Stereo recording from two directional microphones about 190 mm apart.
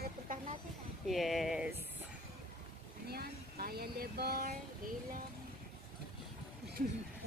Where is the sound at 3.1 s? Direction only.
55° right (ahead or behind).